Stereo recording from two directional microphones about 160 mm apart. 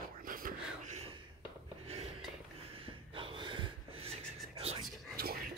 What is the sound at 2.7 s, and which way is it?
Snort, 35° right (ahead or behind).